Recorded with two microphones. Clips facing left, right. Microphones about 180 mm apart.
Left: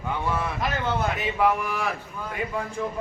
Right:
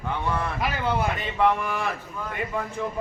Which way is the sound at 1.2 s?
5° left (ahead or behind).